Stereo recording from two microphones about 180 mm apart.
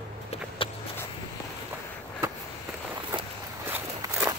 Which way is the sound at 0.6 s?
30° left (ahead or behind).